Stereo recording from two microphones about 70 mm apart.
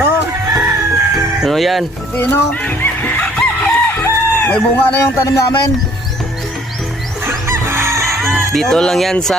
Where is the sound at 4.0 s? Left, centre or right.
Left.